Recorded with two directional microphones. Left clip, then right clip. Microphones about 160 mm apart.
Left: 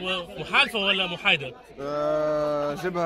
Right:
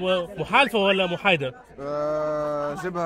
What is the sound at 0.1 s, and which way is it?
Speech, 60° right (ahead or behind).